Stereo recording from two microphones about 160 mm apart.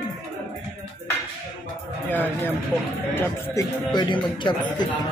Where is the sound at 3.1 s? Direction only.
15° left (ahead or behind).